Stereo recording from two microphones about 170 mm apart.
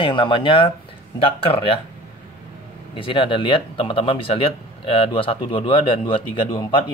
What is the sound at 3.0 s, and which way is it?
Speech, 30° left (ahead or behind).